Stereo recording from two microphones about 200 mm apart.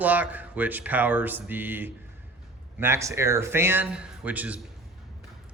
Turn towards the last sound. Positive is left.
turn(degrees=-10)  # may be behind; listen again after turning